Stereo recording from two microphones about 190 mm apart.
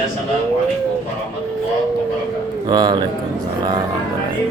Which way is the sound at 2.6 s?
20° right (ahead or behind).